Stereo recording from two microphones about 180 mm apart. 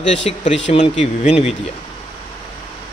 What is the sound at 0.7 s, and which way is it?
Speech, 40° left (ahead or behind).